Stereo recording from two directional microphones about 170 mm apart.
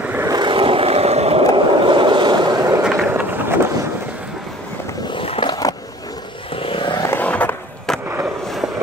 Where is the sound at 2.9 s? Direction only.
15° right (ahead or behind).